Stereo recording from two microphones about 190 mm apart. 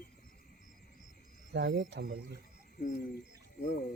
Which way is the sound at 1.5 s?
75° right (ahead or behind).